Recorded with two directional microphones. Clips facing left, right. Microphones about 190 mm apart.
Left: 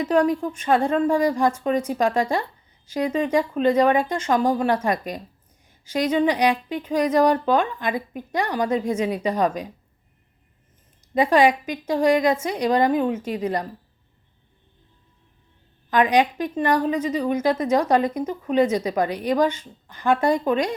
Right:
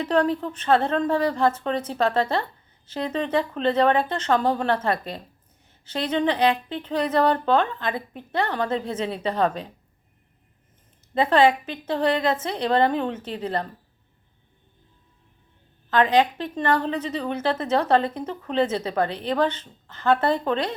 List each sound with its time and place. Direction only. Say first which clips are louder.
0.0 s a woman's voice: left 2 dB; 10° left (ahead or behind)
11.1 s a woman's voice: left 1 dB; 10° left (ahead or behind)
15.9 s a woman's voice: left 1 dB; 15° left (ahead or behind)